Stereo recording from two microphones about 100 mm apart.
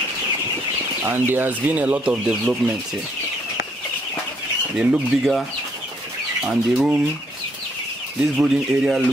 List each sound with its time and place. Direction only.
1.0 s speech: 20° right (ahead or behind)
4.7 s speech: 5° right (ahead or behind)
6.4 s speech: 10° right (ahead or behind)
8.4 s speech: 10° right (ahead or behind)